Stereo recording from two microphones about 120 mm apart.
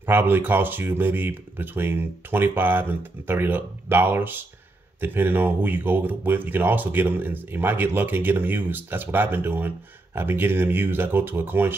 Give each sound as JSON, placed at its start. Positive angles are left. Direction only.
{"t": 0.0, "sound": "speech", "side_deg": -15}